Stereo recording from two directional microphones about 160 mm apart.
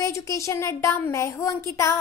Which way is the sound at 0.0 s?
20° left (ahead or behind).